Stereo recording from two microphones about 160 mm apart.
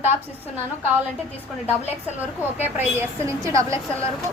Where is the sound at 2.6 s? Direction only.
15° right (ahead or behind).